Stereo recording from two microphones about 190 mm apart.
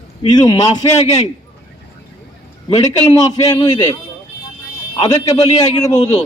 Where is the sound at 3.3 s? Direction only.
20° left (ahead or behind).